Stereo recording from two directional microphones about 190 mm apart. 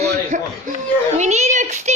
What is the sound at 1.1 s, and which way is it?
Speech, 35° right (ahead or behind).